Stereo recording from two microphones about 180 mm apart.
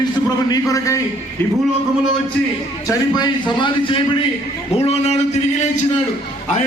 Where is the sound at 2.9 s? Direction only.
25° left (ahead or behind).